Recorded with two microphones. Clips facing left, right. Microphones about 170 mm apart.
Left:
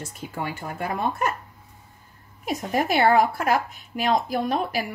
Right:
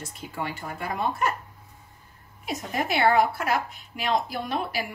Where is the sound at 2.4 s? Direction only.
50° left (ahead or behind).